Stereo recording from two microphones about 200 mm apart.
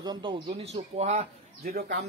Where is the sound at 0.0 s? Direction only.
20° right (ahead or behind).